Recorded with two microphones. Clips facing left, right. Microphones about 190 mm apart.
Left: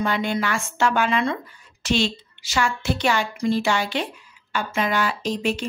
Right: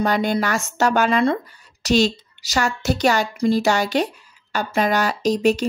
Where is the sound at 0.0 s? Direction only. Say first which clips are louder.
Right 4 dB; 40° right (ahead or behind).